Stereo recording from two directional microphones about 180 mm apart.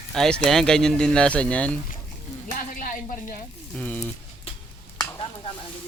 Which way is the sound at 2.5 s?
45° left (ahead or behind).